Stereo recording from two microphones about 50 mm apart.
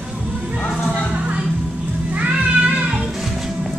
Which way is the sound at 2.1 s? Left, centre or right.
Right.